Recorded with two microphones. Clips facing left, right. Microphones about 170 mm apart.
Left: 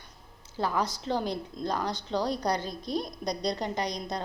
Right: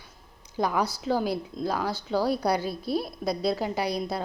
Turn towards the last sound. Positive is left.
turn(degrees=-5)  # may be behind; listen again after turning